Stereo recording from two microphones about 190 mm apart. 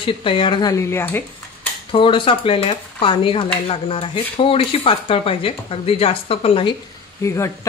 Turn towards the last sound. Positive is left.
turn(degrees=15)  # may be behind; listen again after turning